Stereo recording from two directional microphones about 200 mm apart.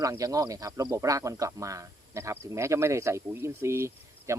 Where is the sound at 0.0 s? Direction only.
15° right (ahead or behind).